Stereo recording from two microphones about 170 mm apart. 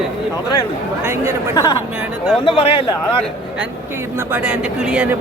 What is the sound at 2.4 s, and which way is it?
Speech, 30° left (ahead or behind).